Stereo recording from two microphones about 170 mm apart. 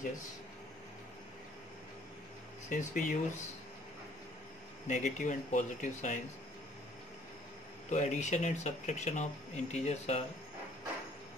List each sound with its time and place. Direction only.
2.7 s speech: 50° left (ahead or behind)
4.8 s speech: 45° left (ahead or behind)
7.9 s speech: 45° left (ahead or behind)